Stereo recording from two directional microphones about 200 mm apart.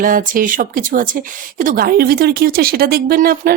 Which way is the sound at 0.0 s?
45° right (ahead or behind).